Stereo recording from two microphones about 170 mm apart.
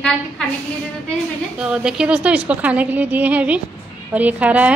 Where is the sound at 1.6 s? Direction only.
5° right (ahead or behind).